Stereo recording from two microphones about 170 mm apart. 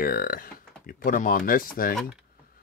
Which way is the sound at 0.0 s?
60° left (ahead or behind).